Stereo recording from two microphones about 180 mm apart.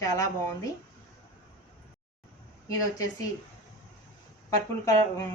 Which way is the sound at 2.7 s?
20° left (ahead or behind).